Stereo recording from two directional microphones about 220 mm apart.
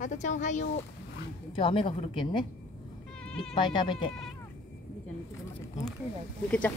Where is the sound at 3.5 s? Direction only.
20° left (ahead or behind).